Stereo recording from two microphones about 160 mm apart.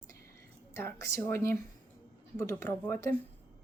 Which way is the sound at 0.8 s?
15° left (ahead or behind).